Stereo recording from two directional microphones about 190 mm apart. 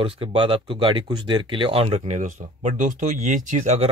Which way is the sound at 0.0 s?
25° right (ahead or behind).